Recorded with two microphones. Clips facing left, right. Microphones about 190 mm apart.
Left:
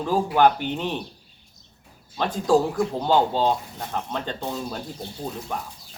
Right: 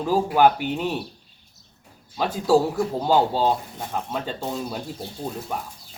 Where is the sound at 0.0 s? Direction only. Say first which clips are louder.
Right 1 dB; 5° right (ahead or behind).